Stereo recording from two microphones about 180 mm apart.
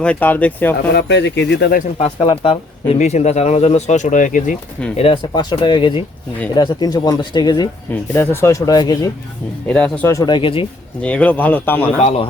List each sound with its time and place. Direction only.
0.0 s speech: 10° left (ahead or behind)
0.9 s speech: 75° left (ahead or behind)
2.0 s speech: 30° left (ahead or behind)
4.9 s speech: 30° left (ahead or behind)
8.1 s speech: 10° left (ahead or behind)
9.6 s speech: 5° left (ahead or behind); by 10.7 s 30° left (ahead or behind)
11.0 s speech: 5° left (ahead or behind)